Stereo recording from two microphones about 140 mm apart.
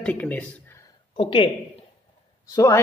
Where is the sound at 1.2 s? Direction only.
40° left (ahead or behind).